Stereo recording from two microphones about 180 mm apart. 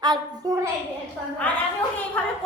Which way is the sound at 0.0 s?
20° right (ahead or behind).